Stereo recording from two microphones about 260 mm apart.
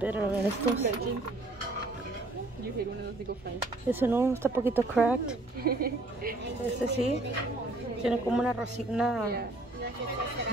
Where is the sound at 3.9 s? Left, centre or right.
Centre.